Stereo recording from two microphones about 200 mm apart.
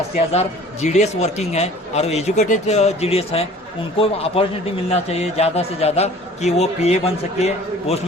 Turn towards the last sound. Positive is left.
turn(degrees=35)  # may be behind; listen again after turning